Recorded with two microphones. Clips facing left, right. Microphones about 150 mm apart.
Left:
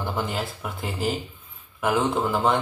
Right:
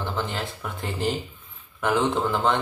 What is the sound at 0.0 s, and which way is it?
Speech, 10° left (ahead or behind).